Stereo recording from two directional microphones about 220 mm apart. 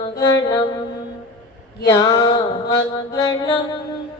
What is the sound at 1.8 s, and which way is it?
Mantra, 15° left (ahead or behind).